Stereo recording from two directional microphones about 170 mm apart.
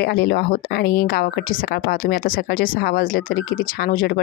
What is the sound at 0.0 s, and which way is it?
A woman's voice, 65° left (ahead or behind).